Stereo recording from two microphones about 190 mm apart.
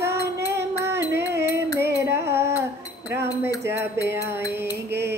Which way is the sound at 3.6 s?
15° right (ahead or behind).